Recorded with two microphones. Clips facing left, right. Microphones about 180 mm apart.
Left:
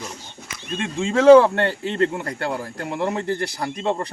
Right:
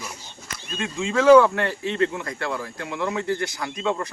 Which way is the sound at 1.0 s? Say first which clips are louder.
Left 3 dB; 30° left (ahead or behind).